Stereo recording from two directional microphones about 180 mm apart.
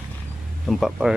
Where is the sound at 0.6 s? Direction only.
Centre (ahead or behind).